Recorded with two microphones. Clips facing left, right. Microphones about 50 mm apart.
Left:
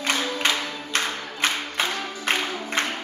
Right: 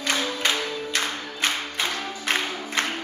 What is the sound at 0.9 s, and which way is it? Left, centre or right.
Music, left.